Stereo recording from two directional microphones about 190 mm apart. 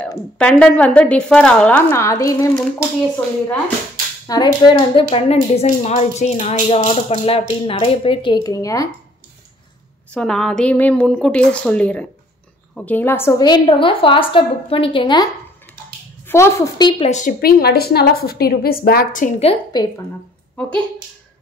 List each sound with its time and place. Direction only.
0.4 s a woman's voice: 5° left (ahead or behind)
4.3 s a woman's voice: 25° left (ahead or behind)
10.1 s a woman's voice: 5° left (ahead or behind); by 15.2 s 25° left (ahead or behind)
16.3 s a woman's voice: 15° left (ahead or behind)
17.1 s a woman's voice: 45° left (ahead or behind)
19.4 s a woman's voice: 20° left (ahead or behind)